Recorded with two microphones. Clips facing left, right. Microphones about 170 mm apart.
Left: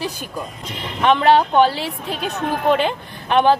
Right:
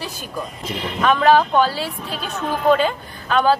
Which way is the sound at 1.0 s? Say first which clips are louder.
Left 1 dB; 20° left (ahead or behind).